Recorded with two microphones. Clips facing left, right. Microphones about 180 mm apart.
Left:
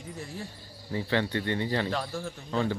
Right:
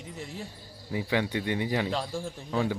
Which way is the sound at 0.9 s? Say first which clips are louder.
Even; 10° right (ahead or behind).